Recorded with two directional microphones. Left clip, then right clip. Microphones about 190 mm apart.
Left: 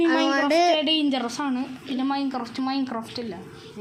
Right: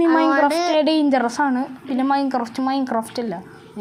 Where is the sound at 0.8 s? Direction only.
40° right (ahead or behind).